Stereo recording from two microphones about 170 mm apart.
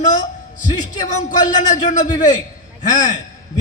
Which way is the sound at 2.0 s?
20° left (ahead or behind).